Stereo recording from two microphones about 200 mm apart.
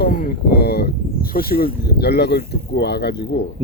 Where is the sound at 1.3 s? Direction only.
50° left (ahead or behind).